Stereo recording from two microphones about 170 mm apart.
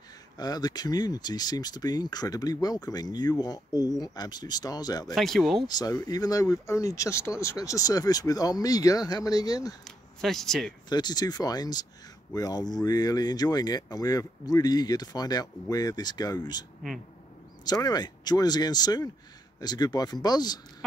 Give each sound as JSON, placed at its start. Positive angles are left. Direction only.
{"t": 0.4, "sound": "speech", "side_deg": 25}
{"t": 5.1, "sound": "speech", "side_deg": 0}
{"t": 5.7, "sound": "speech", "side_deg": 25}
{"t": 9.8, "sound": "speech", "side_deg": 0}
{"t": 10.9, "sound": "speech", "side_deg": 25}
{"t": 17.8, "sound": "speech", "side_deg": 25}